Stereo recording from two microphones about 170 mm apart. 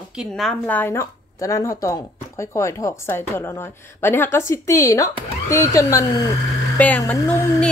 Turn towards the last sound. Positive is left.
turn(degrees=10)  # may be behind; listen again after turning